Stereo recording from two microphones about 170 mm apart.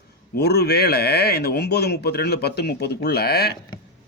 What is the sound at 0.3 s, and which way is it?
Speech, 70° left (ahead or behind).